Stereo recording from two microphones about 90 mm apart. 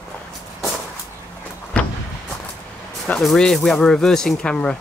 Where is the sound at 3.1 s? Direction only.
15° left (ahead or behind).